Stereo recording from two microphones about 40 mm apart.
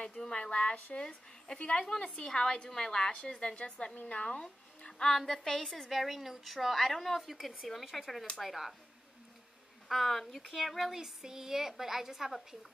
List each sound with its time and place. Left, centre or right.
0.3 s a woman's voice: left
5.1 s a woman's voice: centre
9.8 s a woman's voice: centre
10.9 s a woman's voice: centre